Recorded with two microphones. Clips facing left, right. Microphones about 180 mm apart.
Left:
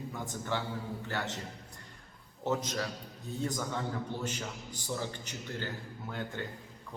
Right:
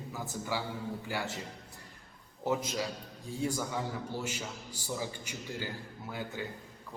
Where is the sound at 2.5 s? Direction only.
10° right (ahead or behind).